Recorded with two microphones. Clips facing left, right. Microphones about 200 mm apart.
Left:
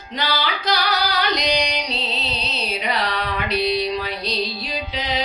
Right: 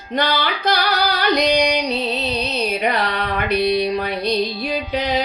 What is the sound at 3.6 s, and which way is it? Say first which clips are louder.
Music: right 3 dB; 55° right (ahead or behind).